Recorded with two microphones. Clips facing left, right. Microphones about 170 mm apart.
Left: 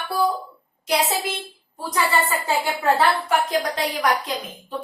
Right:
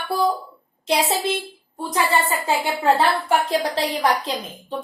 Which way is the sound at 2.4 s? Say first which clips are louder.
Right 4 dB; 25° right (ahead or behind).